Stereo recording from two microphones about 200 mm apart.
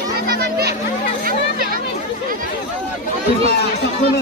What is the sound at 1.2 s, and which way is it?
Hubbub, 45° right (ahead or behind).